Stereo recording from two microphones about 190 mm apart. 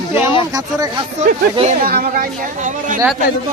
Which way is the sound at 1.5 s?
35° right (ahead or behind).